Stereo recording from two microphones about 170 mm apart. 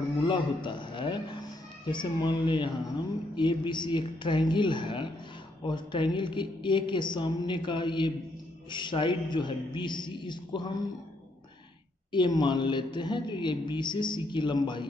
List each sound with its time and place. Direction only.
0.3 s a man's voice: 30° left (ahead or behind)
12.1 s speech: 25° left (ahead or behind)